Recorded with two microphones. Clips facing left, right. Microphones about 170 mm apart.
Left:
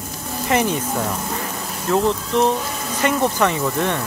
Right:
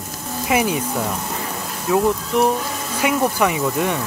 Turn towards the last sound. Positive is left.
turn(degrees=-10)  # may be behind; listen again after turning